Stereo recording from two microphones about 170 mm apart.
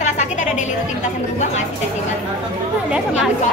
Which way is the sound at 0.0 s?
45° left (ahead or behind).